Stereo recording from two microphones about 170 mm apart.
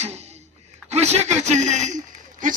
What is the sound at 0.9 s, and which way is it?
A man's voice, 40° right (ahead or behind).